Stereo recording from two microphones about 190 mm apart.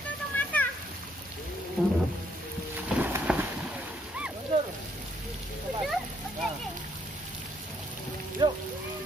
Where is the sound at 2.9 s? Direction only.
10° right (ahead or behind).